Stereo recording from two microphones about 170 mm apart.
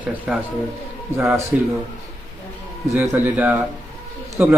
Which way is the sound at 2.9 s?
10° right (ahead or behind).